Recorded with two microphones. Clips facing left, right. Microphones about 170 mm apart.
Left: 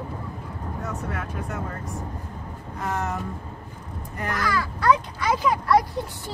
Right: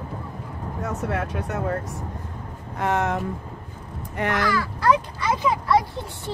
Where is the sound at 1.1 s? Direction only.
70° right (ahead or behind).